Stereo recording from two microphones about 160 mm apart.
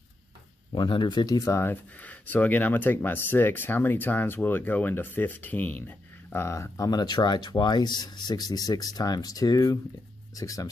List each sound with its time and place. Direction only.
0.7 s speech: 30° left (ahead or behind)